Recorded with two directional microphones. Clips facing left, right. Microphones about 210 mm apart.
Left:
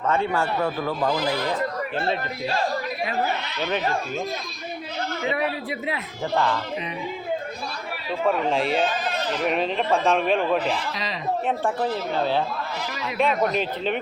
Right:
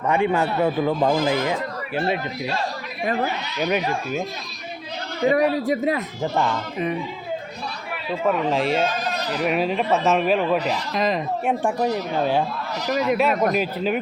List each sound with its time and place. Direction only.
0.1 s a man's voice: 15° right (ahead or behind)
3.6 s speech: 10° right (ahead or behind)
5.2 s a man's voice: 40° right (ahead or behind)
6.3 s speech: 15° right (ahead or behind)
8.4 s a man's voice: centre (ahead or behind)
8.9 s neigh: 40° right (ahead or behind)
9.4 s a man's voice: 5° right (ahead or behind)
10.6 s a man's voice: 45° right (ahead or behind)
11.4 s a man's voice: 15° right (ahead or behind)